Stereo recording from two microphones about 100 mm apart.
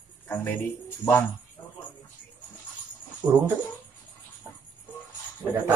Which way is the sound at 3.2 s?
45° right (ahead or behind).